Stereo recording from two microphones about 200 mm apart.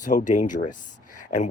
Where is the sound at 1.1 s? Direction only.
40° left (ahead or behind).